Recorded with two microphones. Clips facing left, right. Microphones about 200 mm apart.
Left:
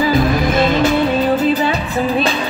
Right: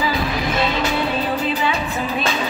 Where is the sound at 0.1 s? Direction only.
45° left (ahead or behind).